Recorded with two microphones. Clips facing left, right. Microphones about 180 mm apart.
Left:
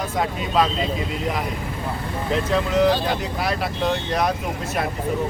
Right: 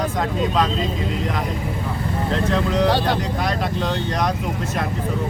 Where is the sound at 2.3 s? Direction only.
5° left (ahead or behind).